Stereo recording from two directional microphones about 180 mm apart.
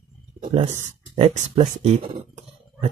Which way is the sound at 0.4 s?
30° right (ahead or behind).